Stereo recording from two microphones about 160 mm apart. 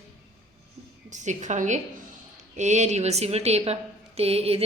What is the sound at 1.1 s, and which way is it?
A woman's voice, 50° right (ahead or behind).